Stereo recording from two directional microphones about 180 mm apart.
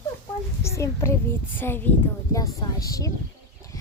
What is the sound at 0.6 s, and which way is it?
Speech, 15° left (ahead or behind).